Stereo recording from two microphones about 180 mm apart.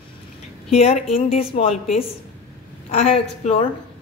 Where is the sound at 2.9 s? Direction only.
35° left (ahead or behind).